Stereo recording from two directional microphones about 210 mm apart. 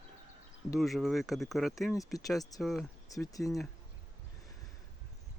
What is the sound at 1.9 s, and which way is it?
Speech, 15° left (ahead or behind).